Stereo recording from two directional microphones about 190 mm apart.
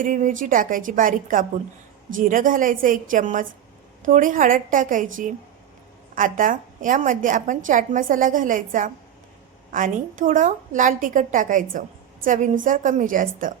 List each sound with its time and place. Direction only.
0.0 s a woman's voice: 45° right (ahead or behind)